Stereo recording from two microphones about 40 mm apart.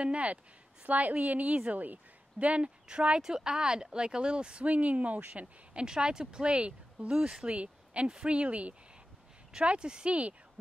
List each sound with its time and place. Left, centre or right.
0.0 s speech: right
2.3 s speech: right
4.6 s speech: right
5.9 s speech: right